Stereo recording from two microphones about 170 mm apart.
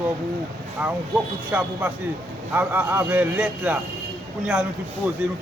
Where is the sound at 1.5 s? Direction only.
10° right (ahead or behind).